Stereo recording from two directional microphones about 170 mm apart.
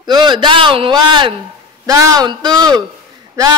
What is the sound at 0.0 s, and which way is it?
A woman's voice, 25° right (ahead or behind).